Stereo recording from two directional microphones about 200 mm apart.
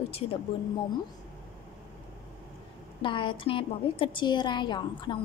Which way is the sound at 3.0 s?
25° left (ahead or behind).